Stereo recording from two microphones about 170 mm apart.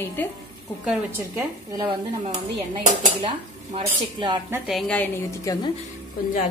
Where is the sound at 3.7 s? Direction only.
30° right (ahead or behind).